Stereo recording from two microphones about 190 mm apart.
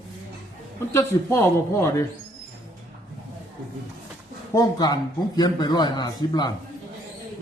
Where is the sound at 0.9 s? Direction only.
15° left (ahead or behind).